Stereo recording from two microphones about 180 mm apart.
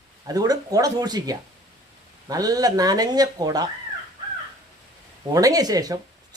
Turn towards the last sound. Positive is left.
turn(degrees=-20)  # may be behind; listen again after turning